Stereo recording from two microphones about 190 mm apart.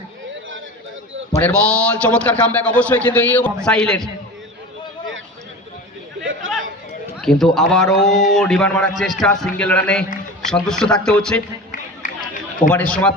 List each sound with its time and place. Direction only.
1.4 s a man's voice: 5° left (ahead or behind)
6.4 s a sound: 90° right
7.2 s a man's voice: centre (ahead or behind)
8.0 s speech: 40° left (ahead or behind)
8.4 s a man's voice: 5° left (ahead or behind)
11.7 s run: 45° left (ahead or behind)
12.7 s a man's voice: 10° left (ahead or behind)